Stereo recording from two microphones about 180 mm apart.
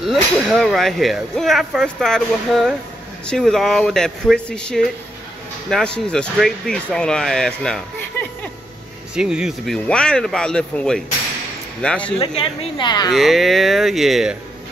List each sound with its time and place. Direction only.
0.0 s speech: centre (ahead or behind)
9.1 s speech: 5° right (ahead or behind)
12.7 s speech: 25° left (ahead or behind)
13.1 s speech: centre (ahead or behind)